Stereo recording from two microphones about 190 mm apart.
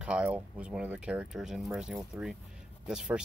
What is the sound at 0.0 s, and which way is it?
Speech, 5° right (ahead or behind).